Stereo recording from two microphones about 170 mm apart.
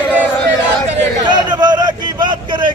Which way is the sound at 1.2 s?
25° right (ahead or behind).